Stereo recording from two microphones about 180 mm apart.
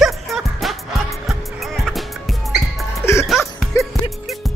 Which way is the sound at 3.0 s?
15° left (ahead or behind).